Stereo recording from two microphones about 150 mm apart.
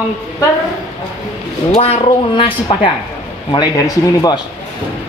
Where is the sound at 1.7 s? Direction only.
40° left (ahead or behind); by 4.4 s 25° left (ahead or behind).